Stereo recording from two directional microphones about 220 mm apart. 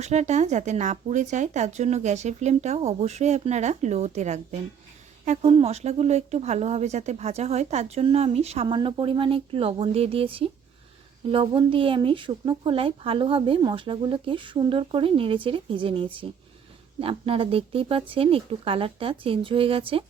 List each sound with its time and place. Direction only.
0.0 s speech: 30° right (ahead or behind)